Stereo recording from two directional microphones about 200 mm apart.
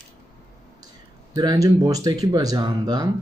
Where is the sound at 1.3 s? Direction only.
20° right (ahead or behind).